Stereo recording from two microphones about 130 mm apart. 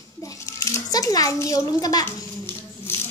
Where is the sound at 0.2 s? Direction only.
25° left (ahead or behind).